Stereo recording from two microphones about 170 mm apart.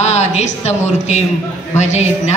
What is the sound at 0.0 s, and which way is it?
A woman's voice, 40° left (ahead or behind).